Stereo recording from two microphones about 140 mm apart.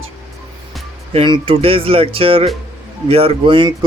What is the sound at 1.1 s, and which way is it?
Speech, 40° right (ahead or behind).